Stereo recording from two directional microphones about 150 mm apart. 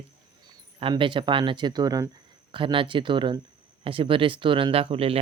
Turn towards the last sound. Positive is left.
turn(degrees=-40)  # may be behind; listen again after turning